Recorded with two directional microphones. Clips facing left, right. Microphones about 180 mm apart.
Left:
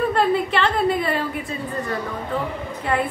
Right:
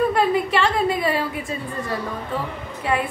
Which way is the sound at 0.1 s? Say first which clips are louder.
Even; 15° right (ahead or behind).